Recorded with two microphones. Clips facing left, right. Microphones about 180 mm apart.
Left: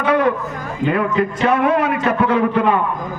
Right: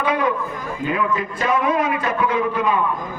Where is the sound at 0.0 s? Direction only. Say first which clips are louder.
Left 4 dB; 60° left (ahead or behind).